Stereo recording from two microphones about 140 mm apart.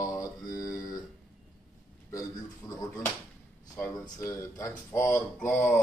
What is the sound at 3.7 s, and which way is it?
Speech, 25° left (ahead or behind).